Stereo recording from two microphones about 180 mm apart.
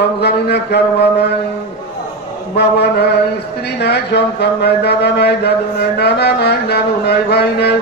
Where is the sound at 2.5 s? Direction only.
65° left (ahead or behind).